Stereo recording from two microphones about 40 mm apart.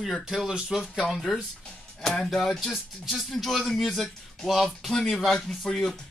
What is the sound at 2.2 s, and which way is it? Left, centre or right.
Speech, centre.